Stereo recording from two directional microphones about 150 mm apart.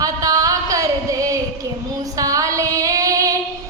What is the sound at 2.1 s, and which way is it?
Female singing, 20° right (ahead or behind).